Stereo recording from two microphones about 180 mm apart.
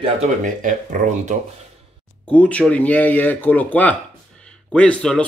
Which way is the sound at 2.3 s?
5° left (ahead or behind).